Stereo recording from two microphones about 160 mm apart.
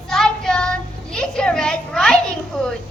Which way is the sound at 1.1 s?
5° left (ahead or behind).